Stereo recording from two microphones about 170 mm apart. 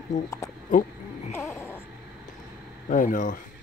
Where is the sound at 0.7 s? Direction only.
50° left (ahead or behind).